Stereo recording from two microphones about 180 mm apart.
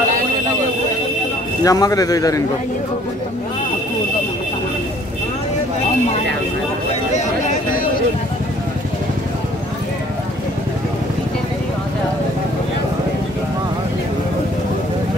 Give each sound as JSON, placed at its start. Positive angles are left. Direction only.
{"t": 1.6, "sound": "a man's voice", "side_deg": 20}